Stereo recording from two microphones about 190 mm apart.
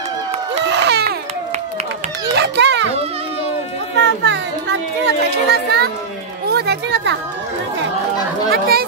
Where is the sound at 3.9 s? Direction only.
70° right (ahead or behind).